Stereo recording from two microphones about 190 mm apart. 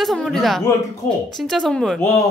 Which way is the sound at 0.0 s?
Centre (ahead or behind).